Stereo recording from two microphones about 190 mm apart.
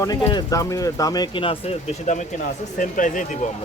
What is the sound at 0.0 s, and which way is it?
Speech, 20° left (ahead or behind).